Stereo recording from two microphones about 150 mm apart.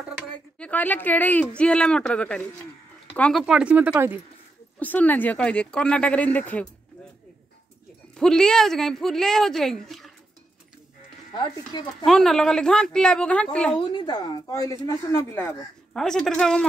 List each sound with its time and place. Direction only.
0.6 s speech: 10° left (ahead or behind)
3.4 s speech: 5° right (ahead or behind)
4.7 s speech: 10° left (ahead or behind)
8.2 s speech: 5° left (ahead or behind)
12.0 s speech: centre (ahead or behind)
13.7 s speech: 30° left (ahead or behind)
15.9 s speech: 5° left (ahead or behind)